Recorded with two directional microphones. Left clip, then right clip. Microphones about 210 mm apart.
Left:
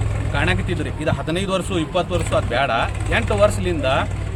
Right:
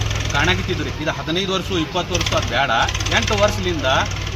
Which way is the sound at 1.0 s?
20° left (ahead or behind).